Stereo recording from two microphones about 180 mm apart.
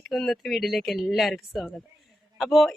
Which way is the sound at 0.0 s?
Centre (ahead or behind).